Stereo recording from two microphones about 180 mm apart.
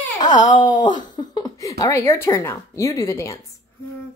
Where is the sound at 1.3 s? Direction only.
25° left (ahead or behind).